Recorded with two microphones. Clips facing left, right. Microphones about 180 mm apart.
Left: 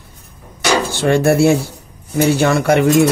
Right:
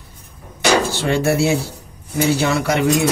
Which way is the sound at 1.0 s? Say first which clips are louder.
Left 7 dB; 55° left (ahead or behind).